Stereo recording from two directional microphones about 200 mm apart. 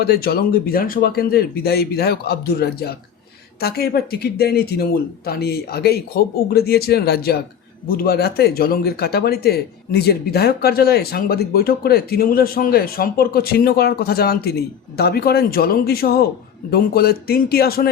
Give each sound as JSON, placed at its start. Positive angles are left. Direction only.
{"t": 0.0, "sound": "speech", "side_deg": 50}